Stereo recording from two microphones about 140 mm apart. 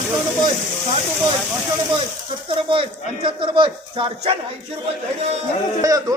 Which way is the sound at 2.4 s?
40° right (ahead or behind).